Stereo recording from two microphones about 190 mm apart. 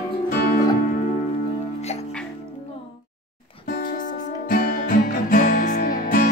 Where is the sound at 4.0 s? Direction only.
50° left (ahead or behind).